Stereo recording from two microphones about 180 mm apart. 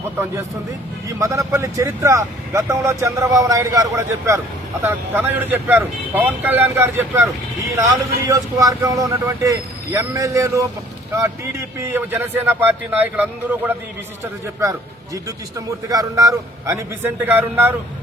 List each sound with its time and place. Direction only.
1.2 s a man's voice: 15° right (ahead or behind)
11.9 s a man's voice: 10° right (ahead or behind)